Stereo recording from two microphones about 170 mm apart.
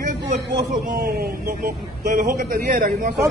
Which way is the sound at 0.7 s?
55° right (ahead or behind).